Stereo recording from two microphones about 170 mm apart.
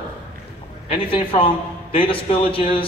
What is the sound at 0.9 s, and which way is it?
A man's voice, 30° left (ahead or behind).